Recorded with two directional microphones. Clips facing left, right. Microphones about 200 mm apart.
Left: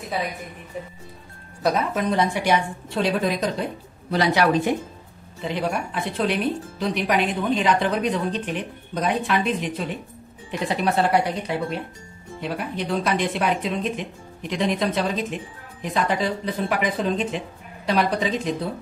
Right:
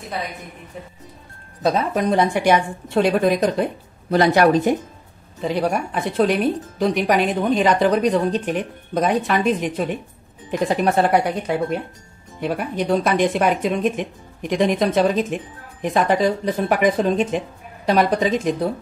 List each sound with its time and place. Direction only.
0.7 s speech: centre (ahead or behind)
1.6 s speech: 25° right (ahead or behind)
2.0 s speech: 50° right (ahead or behind)